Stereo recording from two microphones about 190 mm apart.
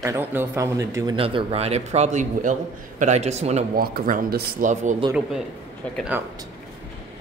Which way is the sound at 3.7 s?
50° right (ahead or behind).